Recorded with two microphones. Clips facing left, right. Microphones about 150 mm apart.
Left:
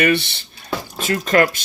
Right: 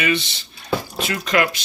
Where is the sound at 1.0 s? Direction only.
45° left (ahead or behind).